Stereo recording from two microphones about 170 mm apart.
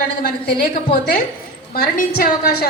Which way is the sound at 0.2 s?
65° left (ahead or behind).